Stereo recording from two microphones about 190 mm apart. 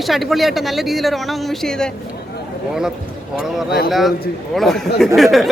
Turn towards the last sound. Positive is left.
turn(degrees=0)  # may be behind; listen again after turning